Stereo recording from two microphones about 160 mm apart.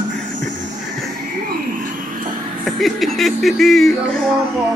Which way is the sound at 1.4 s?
55° right (ahead or behind).